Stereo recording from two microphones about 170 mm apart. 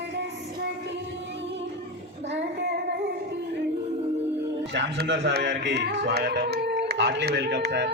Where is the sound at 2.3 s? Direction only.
90° right.